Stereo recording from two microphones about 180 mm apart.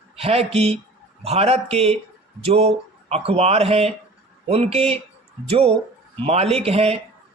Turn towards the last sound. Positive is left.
turn(degrees=-35)  # may be behind; listen again after turning